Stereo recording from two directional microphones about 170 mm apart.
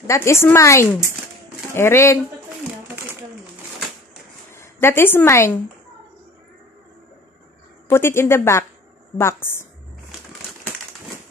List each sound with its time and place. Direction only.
0.0 s a woman's voice: 15° left (ahead or behind)
4.5 s a woman's voice: 15° left (ahead or behind)
7.9 s a woman's voice: 15° left (ahead or behind)